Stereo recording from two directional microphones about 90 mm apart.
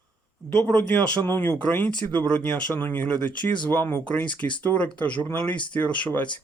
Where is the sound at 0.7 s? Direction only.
20° left (ahead or behind).